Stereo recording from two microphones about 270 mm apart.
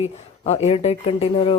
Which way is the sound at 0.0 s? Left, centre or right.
Left.